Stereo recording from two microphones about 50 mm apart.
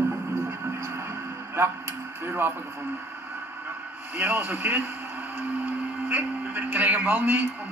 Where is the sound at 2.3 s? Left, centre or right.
Right.